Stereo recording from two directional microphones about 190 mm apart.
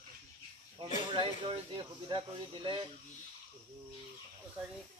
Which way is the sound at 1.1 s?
25° right (ahead or behind).